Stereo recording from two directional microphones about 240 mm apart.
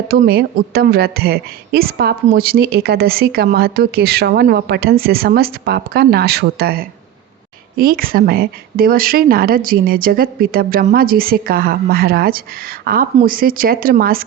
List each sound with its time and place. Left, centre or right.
0.1 s a woman's voice: right